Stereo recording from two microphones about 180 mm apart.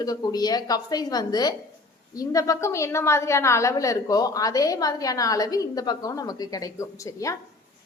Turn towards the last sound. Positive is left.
turn(degrees=15)  # may be behind; listen again after turning